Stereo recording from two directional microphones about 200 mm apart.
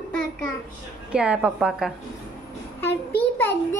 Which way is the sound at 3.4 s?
10° left (ahead or behind).